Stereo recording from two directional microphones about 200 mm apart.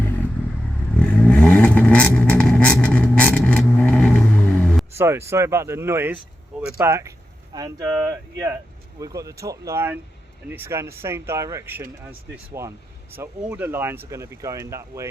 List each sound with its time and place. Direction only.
0.0 s vehicle: 10° left (ahead or behind)
4.9 s speech: 15° right (ahead or behind)